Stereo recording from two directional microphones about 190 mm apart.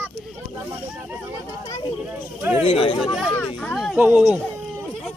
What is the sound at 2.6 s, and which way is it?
Speech, 30° left (ahead or behind).